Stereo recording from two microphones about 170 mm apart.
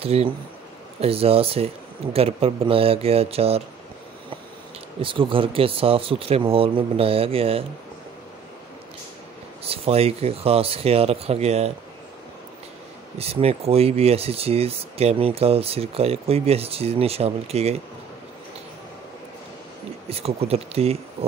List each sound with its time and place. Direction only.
0.0 s speech: 35° right (ahead or behind)
5.0 s speech: 30° right (ahead or behind)
9.7 s speech: 35° right (ahead or behind)
13.2 s speech: 35° right (ahead or behind)
20.1 s speech: 35° right (ahead or behind)